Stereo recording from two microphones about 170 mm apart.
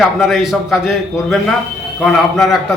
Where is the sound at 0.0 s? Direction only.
Centre (ahead or behind).